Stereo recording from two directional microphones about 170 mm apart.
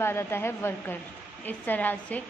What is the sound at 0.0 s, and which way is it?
A woman's voice, 15° left (ahead or behind).